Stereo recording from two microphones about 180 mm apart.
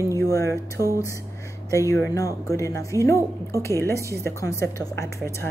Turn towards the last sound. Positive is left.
turn(degrees=15)  # may be behind; listen again after turning